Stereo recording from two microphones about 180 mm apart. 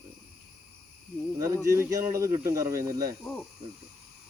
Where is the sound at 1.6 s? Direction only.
15° right (ahead or behind).